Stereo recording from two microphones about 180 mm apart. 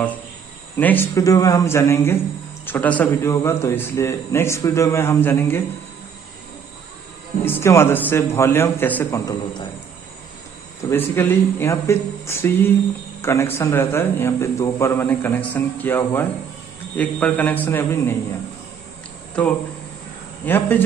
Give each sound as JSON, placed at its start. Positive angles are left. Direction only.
{"t": 0.7, "sound": "a man's voice", "side_deg": 10}
{"t": 7.4, "sound": "a man's voice", "side_deg": 15}
{"t": 10.9, "sound": "a man's voice", "side_deg": 10}
{"t": 19.4, "sound": "a man's voice", "side_deg": 5}